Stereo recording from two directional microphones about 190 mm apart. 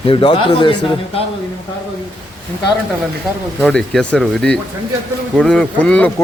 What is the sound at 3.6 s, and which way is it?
Speech, 5° left (ahead or behind).